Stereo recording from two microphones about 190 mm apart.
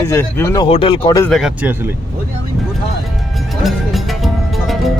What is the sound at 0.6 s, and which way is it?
Speech, 30° left (ahead or behind).